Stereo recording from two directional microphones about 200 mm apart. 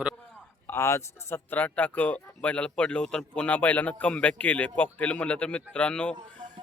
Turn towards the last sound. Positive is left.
turn(degrees=5)  # may be behind; listen again after turning